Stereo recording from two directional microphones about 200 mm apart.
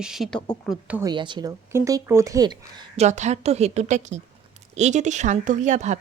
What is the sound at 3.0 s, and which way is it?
Speech, 35° right (ahead or behind).